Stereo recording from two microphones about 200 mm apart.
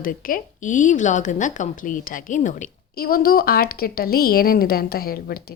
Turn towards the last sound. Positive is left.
turn(degrees=50)  # may be behind; listen again after turning